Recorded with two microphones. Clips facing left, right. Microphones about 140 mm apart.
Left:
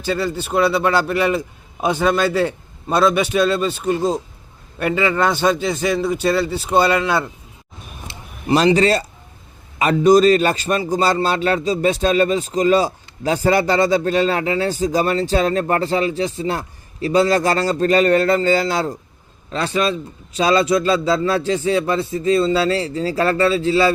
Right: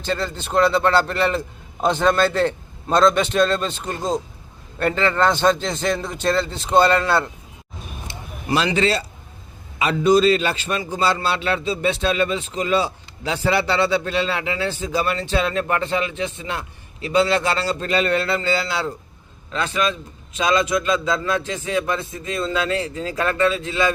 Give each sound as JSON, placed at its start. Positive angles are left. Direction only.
{"t": 0.0, "sound": "a man's voice", "side_deg": 10}
{"t": 8.5, "sound": "a man's voice", "side_deg": 40}